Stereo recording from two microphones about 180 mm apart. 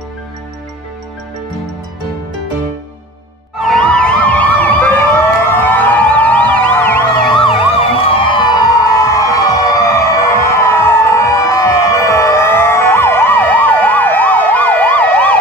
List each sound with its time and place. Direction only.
3.6 s emergency vehicle: 5° left (ahead or behind)
8.1 s emergency vehicle: 25° left (ahead or behind); by 15.3 s 10° left (ahead or behind)